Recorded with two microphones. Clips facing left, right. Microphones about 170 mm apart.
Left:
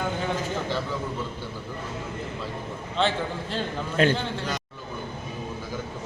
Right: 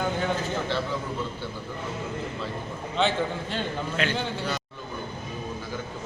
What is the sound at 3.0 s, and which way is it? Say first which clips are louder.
Speech: even; centre (ahead or behind).